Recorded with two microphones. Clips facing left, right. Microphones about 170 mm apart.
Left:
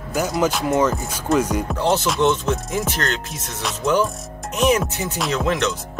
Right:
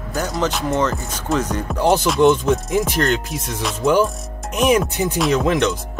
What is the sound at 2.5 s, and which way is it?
Music, 5° right (ahead or behind).